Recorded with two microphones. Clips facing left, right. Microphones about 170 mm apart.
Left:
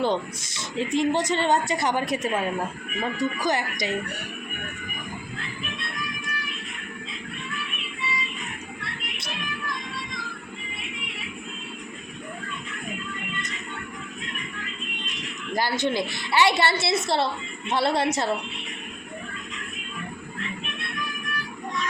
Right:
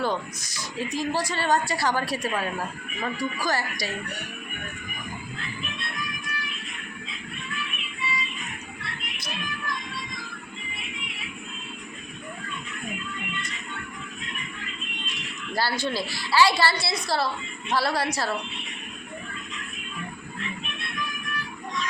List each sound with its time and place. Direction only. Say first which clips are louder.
0.0 s speech: left 3 dB; 25° left (ahead or behind)
15.5 s speech: left 2 dB; 20° left (ahead or behind)